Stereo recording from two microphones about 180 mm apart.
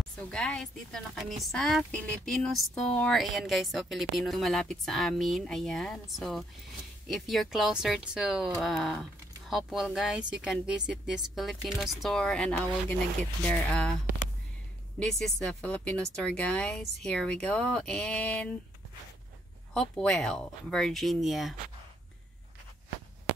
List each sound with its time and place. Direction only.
0.2 s speech: 5° left (ahead or behind)
15.0 s speech: centre (ahead or behind)
19.8 s speech: 5° left (ahead or behind)